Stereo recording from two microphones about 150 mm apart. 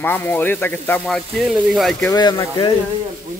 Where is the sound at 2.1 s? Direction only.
30° left (ahead or behind).